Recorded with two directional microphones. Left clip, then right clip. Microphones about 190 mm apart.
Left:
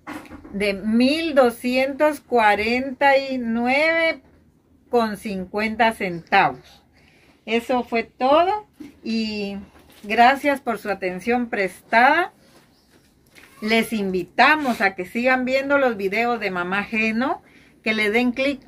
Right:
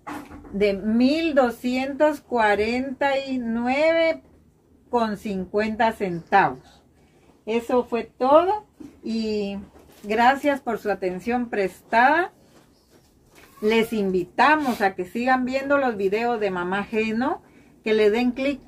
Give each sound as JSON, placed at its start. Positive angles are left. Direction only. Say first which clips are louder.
{"t": 0.6, "sound": "speech", "louder": "even", "side_deg": 15}
{"t": 9.0, "sound": "speech", "louder": "even", "side_deg": 15}
{"t": 13.7, "sound": "speech", "louder": "even", "side_deg": 20}